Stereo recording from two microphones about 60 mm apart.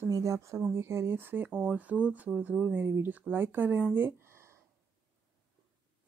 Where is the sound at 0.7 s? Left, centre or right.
Right.